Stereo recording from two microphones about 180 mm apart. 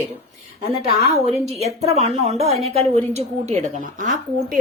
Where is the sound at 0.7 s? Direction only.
35° right (ahead or behind).